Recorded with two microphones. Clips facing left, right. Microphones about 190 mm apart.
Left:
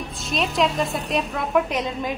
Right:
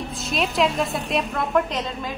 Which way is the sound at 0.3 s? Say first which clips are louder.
Even; centre (ahead or behind).